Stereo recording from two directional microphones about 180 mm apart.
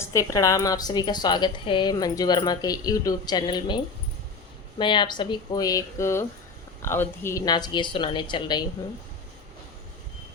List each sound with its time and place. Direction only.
0.0 s a woman's voice: 15° left (ahead or behind)
4.8 s a woman's voice: 25° left (ahead or behind)